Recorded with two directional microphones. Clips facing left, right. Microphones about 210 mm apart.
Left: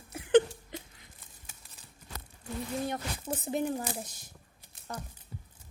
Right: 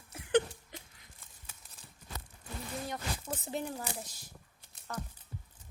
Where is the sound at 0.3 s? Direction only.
30° left (ahead or behind).